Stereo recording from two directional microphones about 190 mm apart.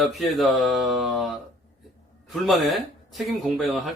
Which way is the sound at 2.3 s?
Centre (ahead or behind).